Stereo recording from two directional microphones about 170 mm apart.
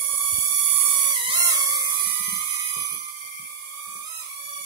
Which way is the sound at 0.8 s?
30° right (ahead or behind).